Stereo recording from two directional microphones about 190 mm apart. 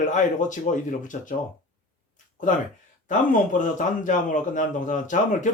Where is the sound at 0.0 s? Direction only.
40° left (ahead or behind).